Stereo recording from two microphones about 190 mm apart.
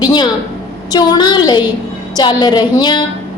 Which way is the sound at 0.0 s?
25° left (ahead or behind).